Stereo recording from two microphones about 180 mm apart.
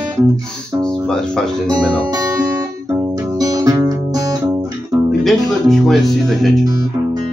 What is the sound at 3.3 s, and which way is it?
Guitar, 20° right (ahead or behind).